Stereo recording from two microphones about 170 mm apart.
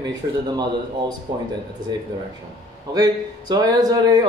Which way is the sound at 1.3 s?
25° right (ahead or behind).